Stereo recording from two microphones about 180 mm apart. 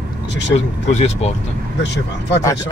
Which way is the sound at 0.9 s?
40° left (ahead or behind).